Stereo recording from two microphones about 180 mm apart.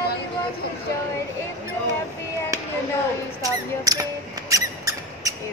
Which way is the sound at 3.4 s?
20° right (ahead or behind).